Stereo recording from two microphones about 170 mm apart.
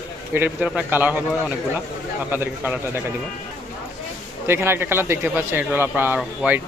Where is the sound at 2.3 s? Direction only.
10° right (ahead or behind).